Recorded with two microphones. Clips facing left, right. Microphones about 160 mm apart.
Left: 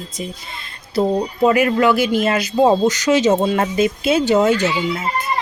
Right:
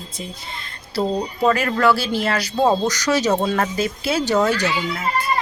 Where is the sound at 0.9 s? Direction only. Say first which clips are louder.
Left 4 dB; 20° left (ahead or behind).